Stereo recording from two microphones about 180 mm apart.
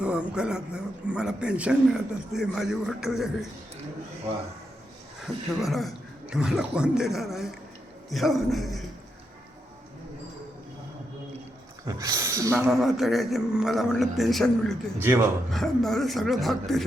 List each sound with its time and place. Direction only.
0.0 s a man's voice: 5° right (ahead or behind)
5.5 s a man's voice: centre (ahead or behind)
11.9 s speech: 20° right (ahead or behind)
12.6 s a man's voice: centre (ahead or behind)
14.9 s speech: 15° right (ahead or behind)
15.5 s a man's voice: centre (ahead or behind)